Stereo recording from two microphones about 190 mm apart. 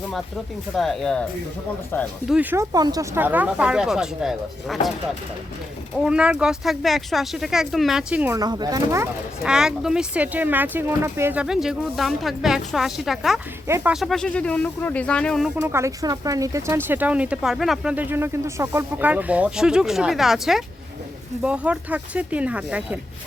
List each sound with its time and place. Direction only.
0.8 s speech: centre (ahead or behind)
2.2 s speech: 5° right (ahead or behind)
2.7 s speech: 20° right (ahead or behind); by 4.8 s centre (ahead or behind)
6.0 s speech: 5° right (ahead or behind)
8.4 s speech: 20° right (ahead or behind)
9.4 s speech: 5° right (ahead or behind)
13.7 s speech: 15° right (ahead or behind)
13.9 s speech: centre (ahead or behind)
15.6 s speech: 15° right (ahead or behind)